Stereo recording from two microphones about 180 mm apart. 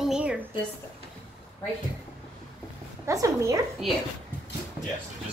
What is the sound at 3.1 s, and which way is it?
Speech, 15° right (ahead or behind).